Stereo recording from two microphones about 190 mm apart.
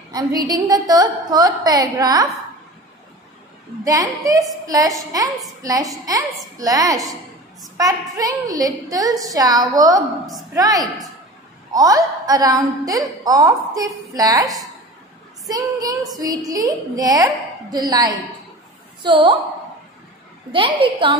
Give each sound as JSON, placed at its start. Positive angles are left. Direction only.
{"t": 0.5, "sound": "a woman's voice", "side_deg": -20}
{"t": 3.8, "sound": "a woman's voice", "side_deg": -20}
{"t": 20.5, "sound": "a woman's voice", "side_deg": -25}